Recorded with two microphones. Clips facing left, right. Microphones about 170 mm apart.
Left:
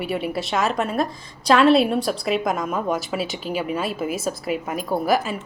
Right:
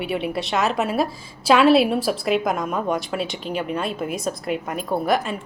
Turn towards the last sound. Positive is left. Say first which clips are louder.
# even
turn(degrees=5)  # may be behind; listen again after turning